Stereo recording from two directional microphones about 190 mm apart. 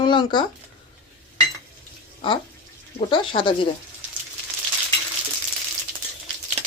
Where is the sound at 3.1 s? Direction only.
25° left (ahead or behind).